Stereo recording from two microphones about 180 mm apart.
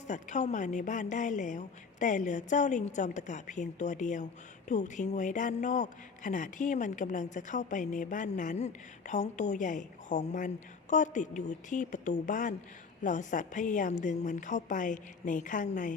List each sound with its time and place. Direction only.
0.1 s speech: 40° left (ahead or behind)